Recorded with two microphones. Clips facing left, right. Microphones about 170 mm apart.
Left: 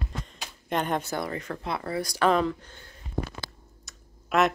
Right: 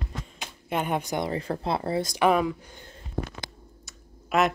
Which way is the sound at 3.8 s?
Centre (ahead or behind).